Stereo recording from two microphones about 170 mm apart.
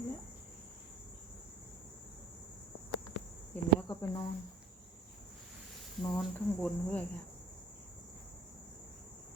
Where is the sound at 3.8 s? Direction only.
25° left (ahead or behind).